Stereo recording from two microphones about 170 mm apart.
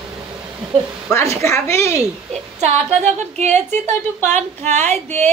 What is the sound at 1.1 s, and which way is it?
Speech, 15° left (ahead or behind).